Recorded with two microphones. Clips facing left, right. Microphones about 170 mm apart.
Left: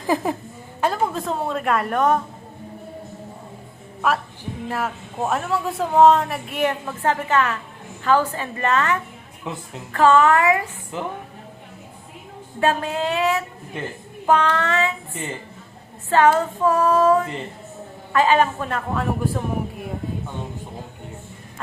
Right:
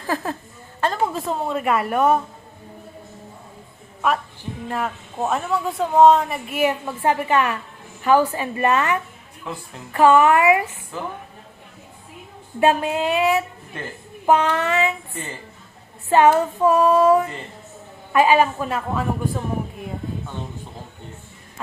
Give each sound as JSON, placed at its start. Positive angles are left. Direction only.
{"t": 0.0, "sound": "a woman's voice", "side_deg": 15}
{"t": 1.0, "sound": "speech", "side_deg": 0}
{"t": 4.0, "sound": "a woman's voice", "side_deg": 0}
{"t": 9.5, "sound": "a woman's voice", "side_deg": 20}
{"t": 9.9, "sound": "a woman's voice", "side_deg": -15}
{"t": 10.9, "sound": "a woman's voice", "side_deg": 20}
{"t": 12.5, "sound": "a woman's voice", "side_deg": -15}
{"t": 13.7, "sound": "a woman's voice", "side_deg": 20}
{"t": 14.3, "sound": "a woman's voice", "side_deg": -15}
{"t": 16.0, "sound": "a woman's voice", "side_deg": -15}